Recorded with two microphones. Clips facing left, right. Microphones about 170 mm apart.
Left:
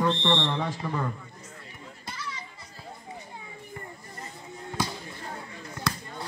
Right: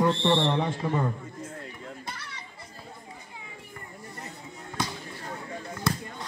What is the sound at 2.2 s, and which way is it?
Children playing, 65° right (ahead or behind).